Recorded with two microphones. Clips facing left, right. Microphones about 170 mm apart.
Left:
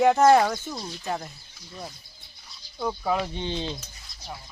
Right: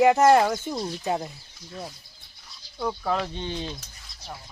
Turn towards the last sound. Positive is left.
turn(degrees=25)  # may be behind; listen again after turning